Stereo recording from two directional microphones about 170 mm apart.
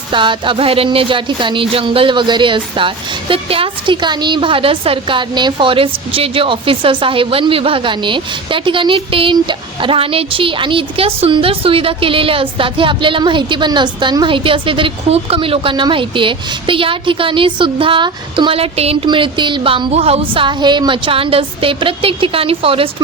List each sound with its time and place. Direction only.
0.1 s music: 30° right (ahead or behind)